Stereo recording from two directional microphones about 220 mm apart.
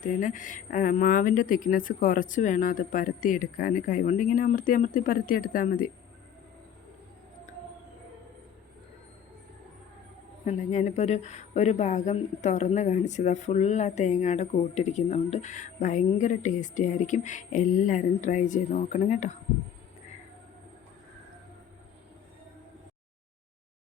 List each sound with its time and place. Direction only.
0.0 s speech: 35° left (ahead or behind)
10.4 s speech: 30° left (ahead or behind)